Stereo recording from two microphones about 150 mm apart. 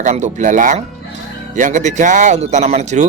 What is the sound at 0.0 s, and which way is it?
Speech, 55° right (ahead or behind).